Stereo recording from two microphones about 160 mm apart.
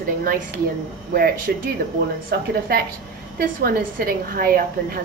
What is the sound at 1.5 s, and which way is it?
Speech, 75° right (ahead or behind).